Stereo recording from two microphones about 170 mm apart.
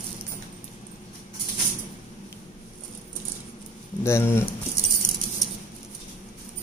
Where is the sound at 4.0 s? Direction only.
15° left (ahead or behind).